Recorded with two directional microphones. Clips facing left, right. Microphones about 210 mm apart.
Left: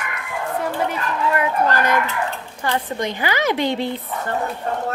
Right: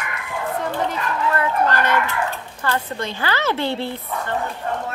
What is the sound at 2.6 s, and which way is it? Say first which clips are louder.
A woman's voice: left 2 dB; 15° left (ahead or behind).